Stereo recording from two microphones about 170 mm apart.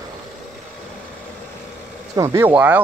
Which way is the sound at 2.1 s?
15° right (ahead or behind).